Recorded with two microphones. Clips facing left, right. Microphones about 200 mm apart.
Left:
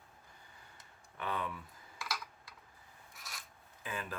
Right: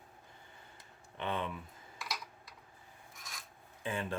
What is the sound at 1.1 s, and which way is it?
Speech, 25° right (ahead or behind).